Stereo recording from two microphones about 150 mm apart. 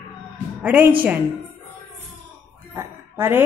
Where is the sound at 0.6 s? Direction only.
10° right (ahead or behind).